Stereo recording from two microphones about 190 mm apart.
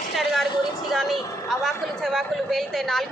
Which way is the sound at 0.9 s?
Centre (ahead or behind).